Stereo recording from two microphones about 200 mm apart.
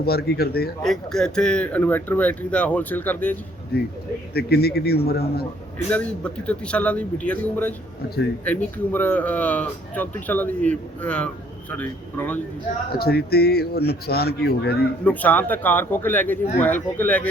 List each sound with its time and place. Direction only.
0.0 s speech: 50° left (ahead or behind)
0.8 s speech: centre (ahead or behind)
3.7 s speech: 50° left (ahead or behind)
5.9 s speech: 5° left (ahead or behind)
13.0 s speech: 50° left (ahead or behind)
15.0 s speech: 5° left (ahead or behind)